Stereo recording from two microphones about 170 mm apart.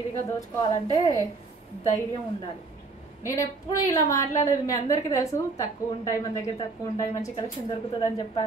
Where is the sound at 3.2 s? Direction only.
20° left (ahead or behind).